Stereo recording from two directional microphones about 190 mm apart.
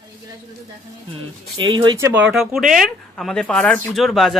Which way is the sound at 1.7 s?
20° right (ahead or behind).